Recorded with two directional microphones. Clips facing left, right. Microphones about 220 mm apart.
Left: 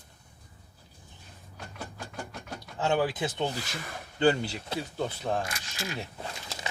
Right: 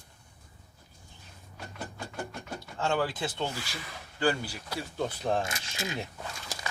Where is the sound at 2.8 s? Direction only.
20° left (ahead or behind).